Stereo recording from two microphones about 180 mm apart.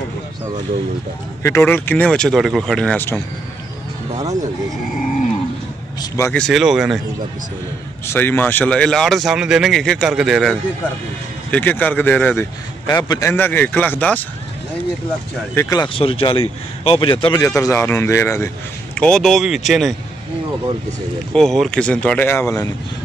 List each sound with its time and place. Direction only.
1.4 s speech: 15° left (ahead or behind)
5.9 s a man's voice: 20° left (ahead or behind)
6.3 s speech: centre (ahead or behind)
8.1 s a man's voice: 10° left (ahead or behind)
15.5 s a man's voice: 15° left (ahead or behind)
18.9 s speech: 5° left (ahead or behind)
21.3 s a man's voice: centre (ahead or behind)